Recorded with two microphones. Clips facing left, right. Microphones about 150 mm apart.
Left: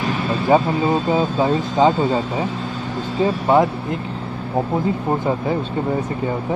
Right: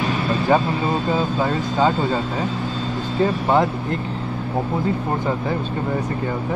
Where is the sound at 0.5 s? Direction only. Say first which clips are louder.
Left 4 dB; 15° left (ahead or behind).